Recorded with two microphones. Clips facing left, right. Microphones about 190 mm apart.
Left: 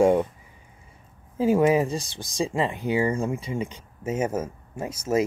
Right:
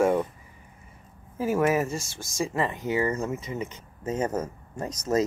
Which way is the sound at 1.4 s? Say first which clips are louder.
Left 4 dB; 15° left (ahead or behind).